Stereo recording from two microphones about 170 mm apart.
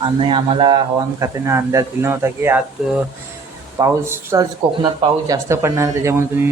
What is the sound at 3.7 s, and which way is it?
Speech, 20° right (ahead or behind).